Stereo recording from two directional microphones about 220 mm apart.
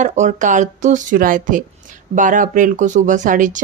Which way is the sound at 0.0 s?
35° right (ahead or behind).